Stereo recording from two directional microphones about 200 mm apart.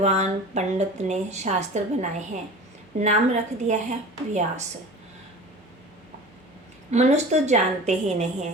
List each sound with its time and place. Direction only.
0.0 s speech: 35° right (ahead or behind)
6.9 s speech: 35° right (ahead or behind)